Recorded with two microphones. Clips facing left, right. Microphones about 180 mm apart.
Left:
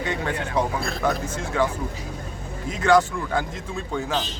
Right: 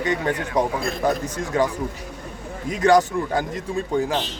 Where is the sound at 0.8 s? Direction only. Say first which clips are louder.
Right 2 dB; 15° right (ahead or behind).